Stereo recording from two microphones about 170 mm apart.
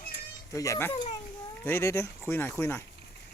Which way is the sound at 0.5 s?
20° left (ahead or behind).